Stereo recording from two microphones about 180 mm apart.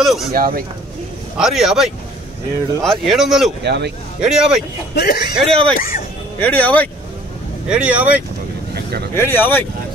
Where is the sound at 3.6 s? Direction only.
70° right (ahead or behind).